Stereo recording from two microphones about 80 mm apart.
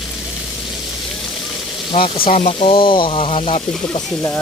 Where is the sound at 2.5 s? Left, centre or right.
Left.